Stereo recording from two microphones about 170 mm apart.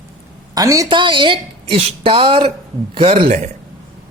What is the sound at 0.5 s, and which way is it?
A woman's voice, 20° right (ahead or behind).